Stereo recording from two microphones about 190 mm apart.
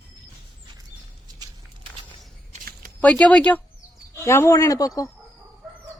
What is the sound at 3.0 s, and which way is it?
A man's voice, 5° left (ahead or behind).